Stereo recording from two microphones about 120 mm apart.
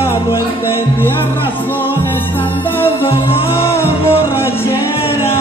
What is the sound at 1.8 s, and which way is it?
Music, 15° left (ahead or behind).